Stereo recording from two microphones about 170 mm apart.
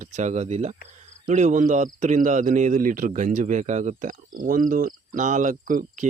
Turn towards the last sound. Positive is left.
turn(degrees=-50)  # may be behind; listen again after turning